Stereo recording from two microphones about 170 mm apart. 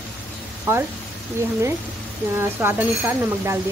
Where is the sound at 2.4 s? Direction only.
15° right (ahead or behind).